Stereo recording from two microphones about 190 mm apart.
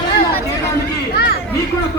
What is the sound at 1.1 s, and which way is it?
Chatter, 55° left (ahead or behind).